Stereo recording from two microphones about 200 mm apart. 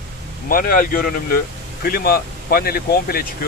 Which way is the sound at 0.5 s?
45° left (ahead or behind).